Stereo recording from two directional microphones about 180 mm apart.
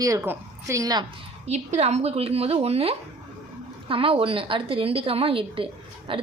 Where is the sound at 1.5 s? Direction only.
40° right (ahead or behind).